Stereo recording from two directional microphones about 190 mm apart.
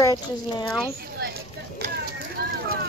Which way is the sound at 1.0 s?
55° right (ahead or behind).